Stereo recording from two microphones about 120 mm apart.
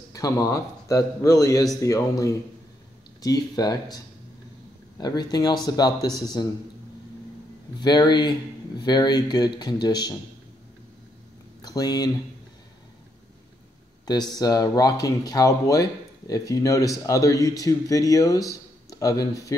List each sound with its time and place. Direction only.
0.1 s a man's voice: 30° left (ahead or behind)
7.8 s speech: 35° left (ahead or behind)
11.6 s speech: 35° left (ahead or behind)
14.0 s a man's voice: 35° left (ahead or behind)